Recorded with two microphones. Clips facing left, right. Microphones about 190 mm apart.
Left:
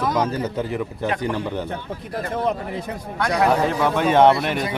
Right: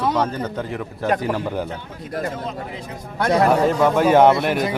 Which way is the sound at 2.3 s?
60° left (ahead or behind).